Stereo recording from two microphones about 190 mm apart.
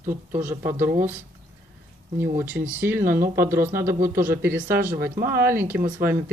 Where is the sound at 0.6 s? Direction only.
45° right (ahead or behind).